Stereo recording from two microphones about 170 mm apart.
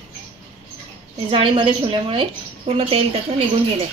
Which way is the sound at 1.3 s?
30° right (ahead or behind).